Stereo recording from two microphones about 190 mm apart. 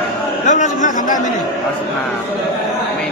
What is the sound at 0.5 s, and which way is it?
Speech, 40° left (ahead or behind).